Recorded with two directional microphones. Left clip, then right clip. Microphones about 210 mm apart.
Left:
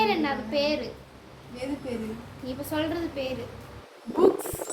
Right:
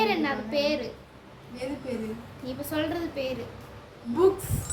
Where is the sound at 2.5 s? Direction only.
15° right (ahead or behind).